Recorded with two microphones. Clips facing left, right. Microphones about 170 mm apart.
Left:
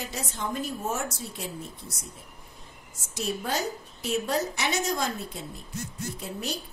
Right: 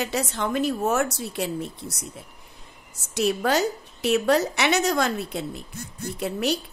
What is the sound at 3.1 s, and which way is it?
Speech, 75° right (ahead or behind).